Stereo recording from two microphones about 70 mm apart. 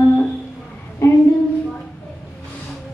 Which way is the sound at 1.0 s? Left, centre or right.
Left.